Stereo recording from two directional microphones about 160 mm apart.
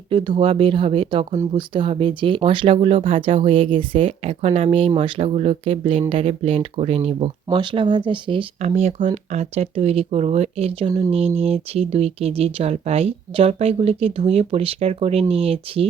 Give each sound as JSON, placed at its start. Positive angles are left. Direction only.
{"t": 0.1, "sound": "speech", "side_deg": -30}
{"t": 8.6, "sound": "speech", "side_deg": -45}